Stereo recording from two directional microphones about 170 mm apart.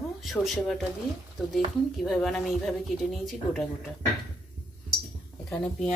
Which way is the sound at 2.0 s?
Centre (ahead or behind).